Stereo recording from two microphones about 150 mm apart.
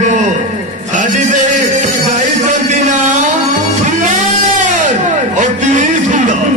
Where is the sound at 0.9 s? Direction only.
55° right (ahead or behind).